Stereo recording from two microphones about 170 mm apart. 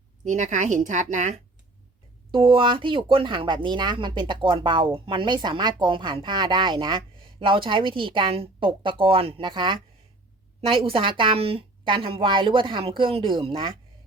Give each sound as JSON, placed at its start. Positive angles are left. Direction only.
{"t": 0.3, "sound": "speech", "side_deg": -45}
{"t": 2.3, "sound": "a woman's voice", "side_deg": -30}